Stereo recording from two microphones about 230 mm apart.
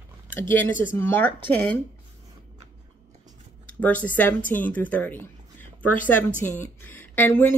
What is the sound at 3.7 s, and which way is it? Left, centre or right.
Speech, centre.